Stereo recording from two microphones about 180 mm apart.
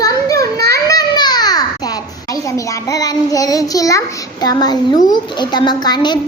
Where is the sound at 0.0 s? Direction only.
20° left (ahead or behind).